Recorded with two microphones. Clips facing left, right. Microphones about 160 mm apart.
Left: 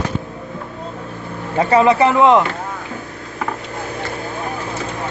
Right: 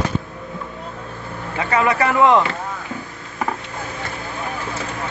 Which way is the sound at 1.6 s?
30° left (ahead or behind).